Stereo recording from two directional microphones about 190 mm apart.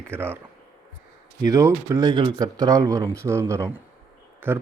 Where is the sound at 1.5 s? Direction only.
15° right (ahead or behind).